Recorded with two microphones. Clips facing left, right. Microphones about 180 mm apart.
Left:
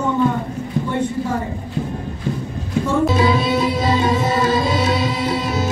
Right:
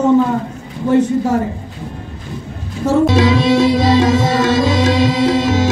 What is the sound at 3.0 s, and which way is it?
Music, 90° right.